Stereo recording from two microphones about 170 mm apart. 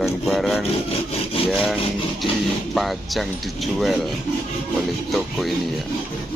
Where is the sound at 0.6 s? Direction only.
35° left (ahead or behind).